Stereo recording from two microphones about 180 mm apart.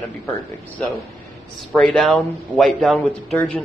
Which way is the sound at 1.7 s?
5° left (ahead or behind).